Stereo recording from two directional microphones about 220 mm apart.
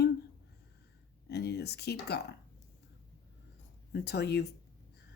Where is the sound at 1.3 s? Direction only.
50° left (ahead or behind).